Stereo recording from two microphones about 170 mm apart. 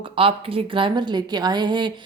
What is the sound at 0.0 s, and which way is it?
Speech, 35° right (ahead or behind).